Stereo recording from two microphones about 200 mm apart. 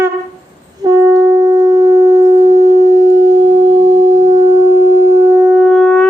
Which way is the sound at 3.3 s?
25° right (ahead or behind).